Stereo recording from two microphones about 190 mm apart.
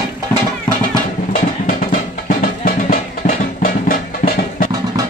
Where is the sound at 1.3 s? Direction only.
45° left (ahead or behind).